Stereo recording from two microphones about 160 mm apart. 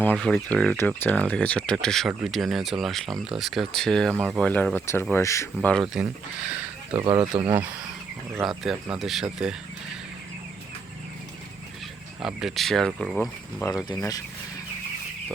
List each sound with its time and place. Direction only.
0.0 s speech: 5° left (ahead or behind)
5.7 s speech: 5° right (ahead or behind)
7.2 s speech: 30° right (ahead or behind)
8.3 s speech: centre (ahead or behind)
12.2 s speech: 5° right (ahead or behind)
13.7 s speech: 25° left (ahead or behind)